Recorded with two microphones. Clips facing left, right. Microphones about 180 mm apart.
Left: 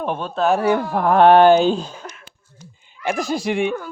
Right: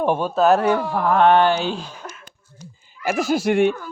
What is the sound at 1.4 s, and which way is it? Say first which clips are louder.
Speech: left 6 dB; 45° left (ahead or behind).